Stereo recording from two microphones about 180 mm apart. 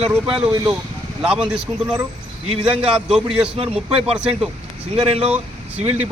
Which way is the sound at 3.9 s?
30° right (ahead or behind).